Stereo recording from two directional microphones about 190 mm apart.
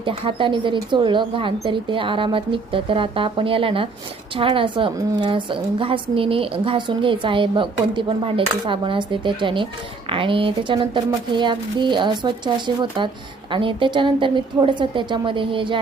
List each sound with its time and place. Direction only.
0.0 s a woman's voice: 25° right (ahead or behind)